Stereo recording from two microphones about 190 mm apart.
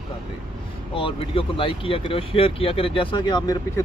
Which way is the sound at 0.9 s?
30° left (ahead or behind).